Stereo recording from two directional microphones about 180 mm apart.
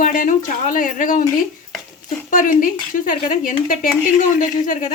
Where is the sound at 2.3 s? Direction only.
45° left (ahead or behind).